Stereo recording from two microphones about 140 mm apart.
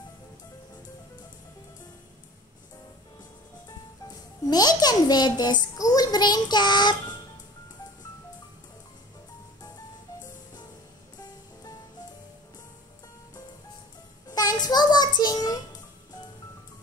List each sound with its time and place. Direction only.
4.5 s a child's voice: 30° left (ahead or behind)
14.3 s music: 25° left (ahead or behind)